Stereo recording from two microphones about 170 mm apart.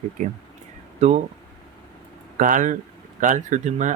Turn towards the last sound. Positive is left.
turn(degrees=-45)  # may be behind; listen again after turning